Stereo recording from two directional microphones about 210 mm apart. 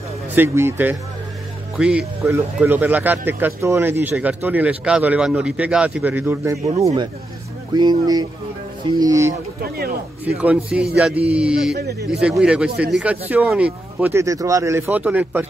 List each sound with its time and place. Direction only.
0.4 s speech: 10° right (ahead or behind)
7.7 s speech: 20° right (ahead or behind); by 11.7 s 5° right (ahead or behind)
11.7 s speech: 50° right (ahead or behind)
12.1 s speech: 5° right (ahead or behind)